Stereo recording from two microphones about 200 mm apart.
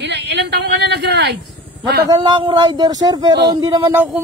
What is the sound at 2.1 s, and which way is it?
Speech, 25° right (ahead or behind).